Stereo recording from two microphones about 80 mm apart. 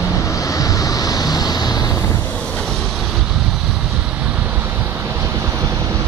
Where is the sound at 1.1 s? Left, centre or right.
Left.